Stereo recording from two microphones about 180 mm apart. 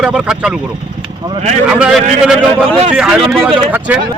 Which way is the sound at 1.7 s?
5° right (ahead or behind).